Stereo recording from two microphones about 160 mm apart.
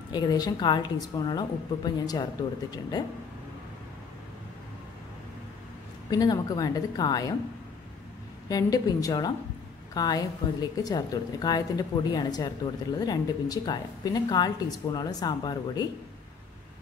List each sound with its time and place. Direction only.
0.1 s a woman's voice: 25° left (ahead or behind)
6.0 s a woman's voice: 25° left (ahead or behind)
8.5 s a woman's voice: 25° left (ahead or behind)